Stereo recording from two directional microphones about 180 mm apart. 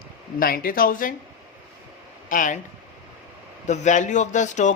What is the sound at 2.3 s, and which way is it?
Speech, 45° left (ahead or behind).